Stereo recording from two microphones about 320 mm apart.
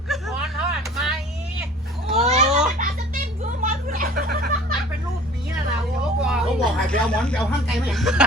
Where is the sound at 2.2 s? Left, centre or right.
Right.